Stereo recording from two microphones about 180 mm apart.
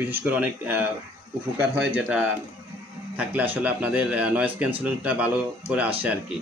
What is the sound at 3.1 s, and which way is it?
Speech, 10° right (ahead or behind).